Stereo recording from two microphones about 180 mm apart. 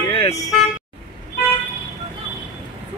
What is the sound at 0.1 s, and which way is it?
Vehicle, 35° left (ahead or behind).